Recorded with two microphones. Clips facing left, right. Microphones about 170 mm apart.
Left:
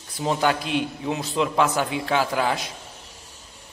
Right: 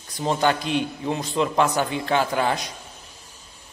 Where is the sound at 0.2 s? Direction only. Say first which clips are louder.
Right 1 dB; centre (ahead or behind).